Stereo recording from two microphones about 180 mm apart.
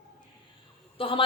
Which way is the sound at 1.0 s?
30° left (ahead or behind).